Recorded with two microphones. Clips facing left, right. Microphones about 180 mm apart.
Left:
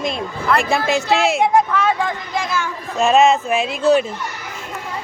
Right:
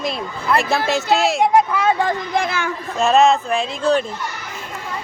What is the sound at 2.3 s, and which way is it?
Speech, 60° right (ahead or behind).